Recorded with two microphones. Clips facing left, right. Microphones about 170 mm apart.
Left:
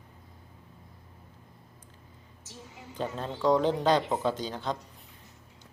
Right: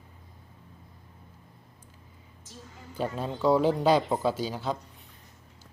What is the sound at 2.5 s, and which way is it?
Speech, 15° left (ahead or behind).